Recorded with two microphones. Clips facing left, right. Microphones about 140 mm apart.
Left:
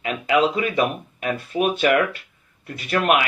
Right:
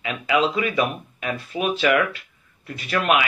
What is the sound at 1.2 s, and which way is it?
Speech, 45° left (ahead or behind).